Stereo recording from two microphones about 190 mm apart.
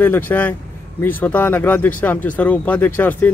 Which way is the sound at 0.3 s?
10° left (ahead or behind).